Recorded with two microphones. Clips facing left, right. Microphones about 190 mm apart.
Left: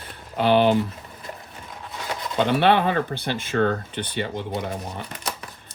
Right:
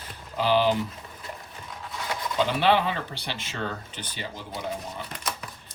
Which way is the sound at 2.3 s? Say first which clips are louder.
Left 4 dB; 60° left (ahead or behind).